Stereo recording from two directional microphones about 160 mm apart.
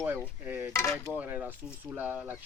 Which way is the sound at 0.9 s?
5° left (ahead or behind).